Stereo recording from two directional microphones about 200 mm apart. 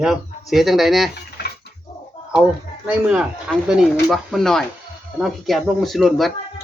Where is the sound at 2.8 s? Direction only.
5° right (ahead or behind).